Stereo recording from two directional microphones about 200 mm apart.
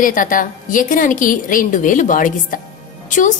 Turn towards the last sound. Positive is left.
turn(degrees=40)  # may be behind; listen again after turning